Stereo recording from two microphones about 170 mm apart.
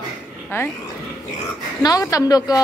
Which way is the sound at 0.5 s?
15° left (ahead or behind).